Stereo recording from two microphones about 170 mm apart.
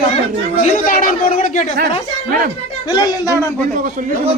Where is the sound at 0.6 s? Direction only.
45° left (ahead or behind).